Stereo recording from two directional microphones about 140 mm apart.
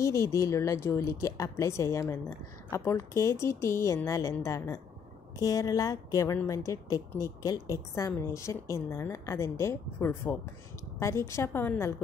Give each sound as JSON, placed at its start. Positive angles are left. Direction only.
{"t": 0.0, "sound": "a woman's voice", "side_deg": 20}